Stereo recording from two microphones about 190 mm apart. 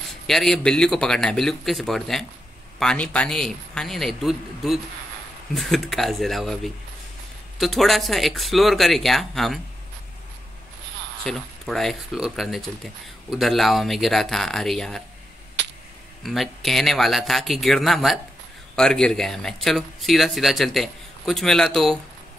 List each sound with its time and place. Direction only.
0.3 s speech: centre (ahead or behind)
11.2 s speech: centre (ahead or behind)
15.6 s a sound: 65° right (ahead or behind)
16.2 s speech: centre (ahead or behind)